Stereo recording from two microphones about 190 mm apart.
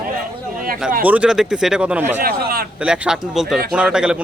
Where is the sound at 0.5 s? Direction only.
50° right (ahead or behind).